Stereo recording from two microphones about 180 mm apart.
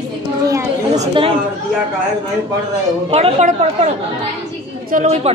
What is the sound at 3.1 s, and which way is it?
Speech, 35° right (ahead or behind).